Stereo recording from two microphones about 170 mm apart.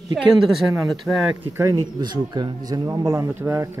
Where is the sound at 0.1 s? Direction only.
Centre (ahead or behind).